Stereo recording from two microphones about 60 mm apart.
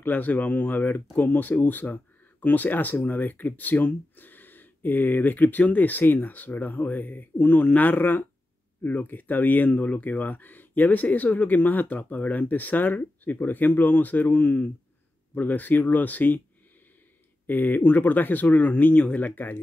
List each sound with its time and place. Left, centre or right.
0.0 s speech: left
17.5 s speech: left